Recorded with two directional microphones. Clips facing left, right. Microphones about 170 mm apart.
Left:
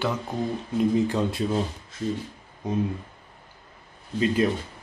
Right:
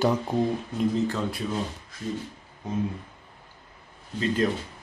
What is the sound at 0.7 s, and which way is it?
Speech, 10° left (ahead or behind).